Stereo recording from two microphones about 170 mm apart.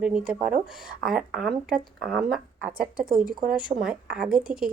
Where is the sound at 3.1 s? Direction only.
55° right (ahead or behind).